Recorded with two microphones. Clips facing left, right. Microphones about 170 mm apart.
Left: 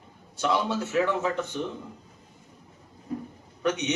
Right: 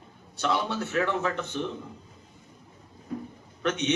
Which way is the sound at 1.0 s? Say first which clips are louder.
Left 1 dB; 15° left (ahead or behind).